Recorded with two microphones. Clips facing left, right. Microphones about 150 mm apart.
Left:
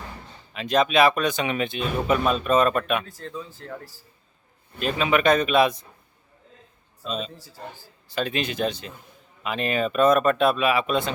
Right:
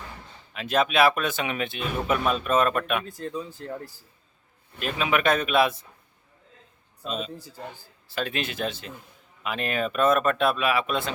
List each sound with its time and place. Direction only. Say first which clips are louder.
0.5 s speech: left 3 dB; 5° right (ahead or behind)
3.2 s speech: right 3 dB; 15° right (ahead or behind)
4.8 s speech: left 3 dB; 5° right (ahead or behind)
7.0 s speech: left 1 dB; 5° right (ahead or behind)